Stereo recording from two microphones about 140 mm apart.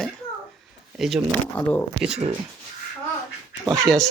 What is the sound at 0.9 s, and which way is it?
Speech, centre (ahead or behind).